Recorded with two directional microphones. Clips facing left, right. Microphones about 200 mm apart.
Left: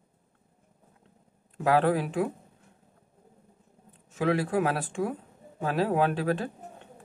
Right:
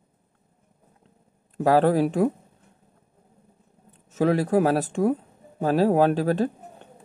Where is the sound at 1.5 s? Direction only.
40° right (ahead or behind).